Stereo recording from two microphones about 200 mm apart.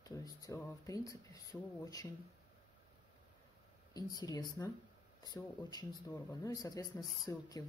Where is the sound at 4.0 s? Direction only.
20° left (ahead or behind).